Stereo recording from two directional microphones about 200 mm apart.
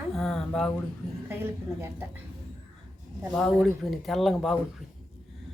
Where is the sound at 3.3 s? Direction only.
5° left (ahead or behind).